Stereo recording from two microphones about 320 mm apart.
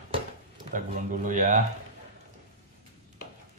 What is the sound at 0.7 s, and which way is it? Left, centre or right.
Speech, right.